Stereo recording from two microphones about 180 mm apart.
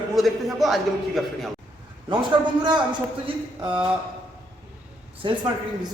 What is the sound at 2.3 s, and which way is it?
Speech, 25° right (ahead or behind).